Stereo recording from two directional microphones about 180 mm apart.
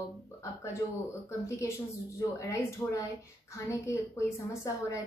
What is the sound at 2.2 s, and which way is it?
Speech, 15° left (ahead or behind).